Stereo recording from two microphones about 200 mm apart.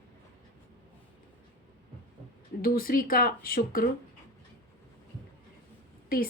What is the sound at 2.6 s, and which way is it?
A woman's voice, 45° left (ahead or behind).